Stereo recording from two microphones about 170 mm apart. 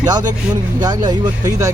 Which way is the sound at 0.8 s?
20° right (ahead or behind).